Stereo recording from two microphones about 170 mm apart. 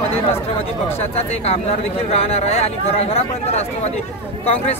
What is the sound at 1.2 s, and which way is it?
Speech, 35° left (ahead or behind).